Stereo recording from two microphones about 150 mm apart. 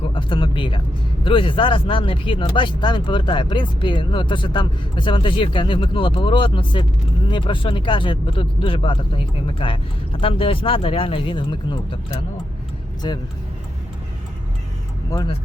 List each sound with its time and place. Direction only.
0.1 s speech: 35° left (ahead or behind)
15.1 s speech: 30° left (ahead or behind)